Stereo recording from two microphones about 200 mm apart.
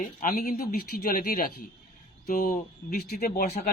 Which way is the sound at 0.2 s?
40° left (ahead or behind).